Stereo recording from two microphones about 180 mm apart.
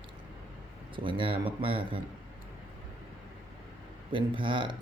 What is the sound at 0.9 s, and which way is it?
Speech, 30° right (ahead or behind).